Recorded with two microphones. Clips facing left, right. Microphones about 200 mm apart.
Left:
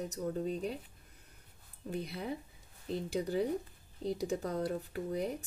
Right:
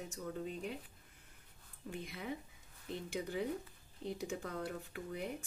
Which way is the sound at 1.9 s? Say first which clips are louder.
Left 5 dB; 35° left (ahead or behind).